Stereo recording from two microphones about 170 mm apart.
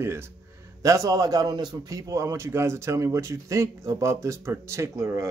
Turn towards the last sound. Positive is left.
turn(degrees=-15)  # may be behind; listen again after turning